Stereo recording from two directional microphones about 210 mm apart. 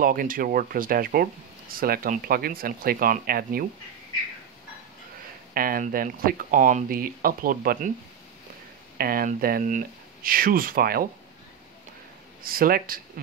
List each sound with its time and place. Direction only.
0.0 s speech: 40° right (ahead or behind)
5.5 s speech: 45° right (ahead or behind)
8.9 s speech: 45° right (ahead or behind)
12.4 s speech: 45° right (ahead or behind)